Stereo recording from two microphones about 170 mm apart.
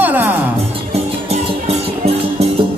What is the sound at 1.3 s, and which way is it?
Music, 35° right (ahead or behind).